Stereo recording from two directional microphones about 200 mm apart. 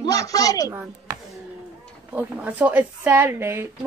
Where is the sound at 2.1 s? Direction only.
5° right (ahead or behind).